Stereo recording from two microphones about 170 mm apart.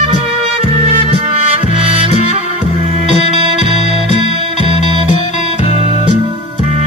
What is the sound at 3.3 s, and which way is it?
Music, 40° left (ahead or behind).